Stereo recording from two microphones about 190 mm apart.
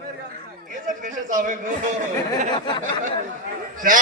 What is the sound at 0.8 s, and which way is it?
Speech, 45° right (ahead or behind).